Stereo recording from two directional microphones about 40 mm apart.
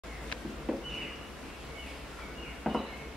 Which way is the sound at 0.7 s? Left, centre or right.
Centre.